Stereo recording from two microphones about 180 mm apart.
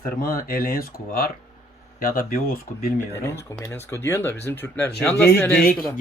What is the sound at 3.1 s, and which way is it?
Speech, 15° left (ahead or behind).